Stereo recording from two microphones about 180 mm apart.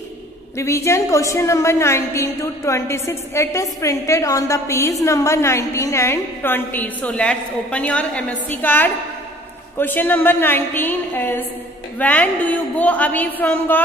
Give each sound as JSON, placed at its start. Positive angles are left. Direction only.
{"t": 0.6, "sound": "a woman's voice", "side_deg": 15}